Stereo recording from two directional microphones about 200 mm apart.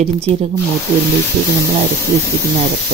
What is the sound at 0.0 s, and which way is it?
Speech, 30° right (ahead or behind).